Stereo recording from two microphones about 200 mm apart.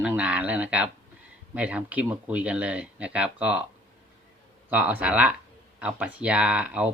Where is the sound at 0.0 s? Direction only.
5° right (ahead or behind).